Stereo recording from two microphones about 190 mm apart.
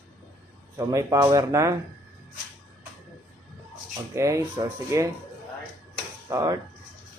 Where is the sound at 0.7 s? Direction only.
15° right (ahead or behind).